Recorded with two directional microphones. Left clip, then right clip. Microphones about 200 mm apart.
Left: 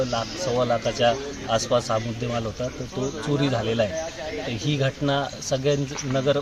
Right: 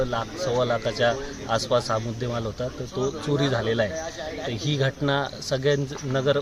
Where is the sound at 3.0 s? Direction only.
Centre (ahead or behind).